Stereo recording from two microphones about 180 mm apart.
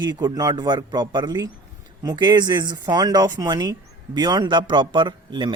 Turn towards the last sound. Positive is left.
turn(degrees=-25)  # may be behind; listen again after turning